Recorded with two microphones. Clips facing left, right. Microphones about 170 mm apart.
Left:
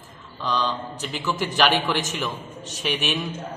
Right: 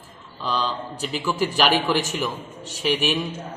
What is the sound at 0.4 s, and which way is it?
A man's voice, 5° right (ahead or behind).